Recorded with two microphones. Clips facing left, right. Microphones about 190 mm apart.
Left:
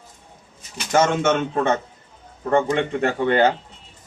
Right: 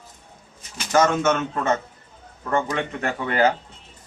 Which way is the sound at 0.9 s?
25° left (ahead or behind).